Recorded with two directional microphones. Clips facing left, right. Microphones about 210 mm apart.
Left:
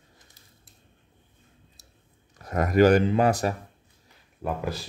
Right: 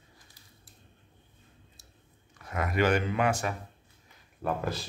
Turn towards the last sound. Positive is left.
turn(degrees=10)  # may be behind; listen again after turning